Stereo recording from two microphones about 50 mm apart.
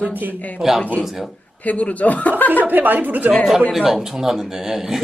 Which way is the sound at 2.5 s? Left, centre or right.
Right.